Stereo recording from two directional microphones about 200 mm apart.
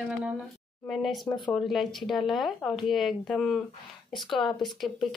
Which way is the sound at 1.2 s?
20° left (ahead or behind).